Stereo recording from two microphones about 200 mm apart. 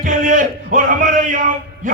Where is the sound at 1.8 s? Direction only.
40° right (ahead or behind).